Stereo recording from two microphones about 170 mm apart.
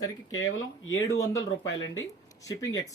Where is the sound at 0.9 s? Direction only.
20° left (ahead or behind).